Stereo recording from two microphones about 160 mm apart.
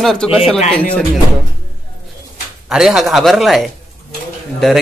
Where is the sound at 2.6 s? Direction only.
5° right (ahead or behind).